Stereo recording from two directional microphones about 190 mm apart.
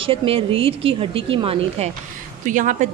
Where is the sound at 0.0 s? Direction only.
30° right (ahead or behind).